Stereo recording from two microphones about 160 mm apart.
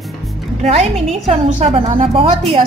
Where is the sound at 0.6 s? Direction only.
40° right (ahead or behind).